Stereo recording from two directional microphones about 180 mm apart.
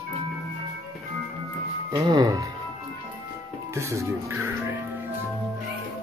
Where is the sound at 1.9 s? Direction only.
20° right (ahead or behind).